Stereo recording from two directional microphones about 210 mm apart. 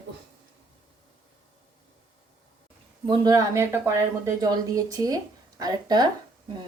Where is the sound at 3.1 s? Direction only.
20° right (ahead or behind).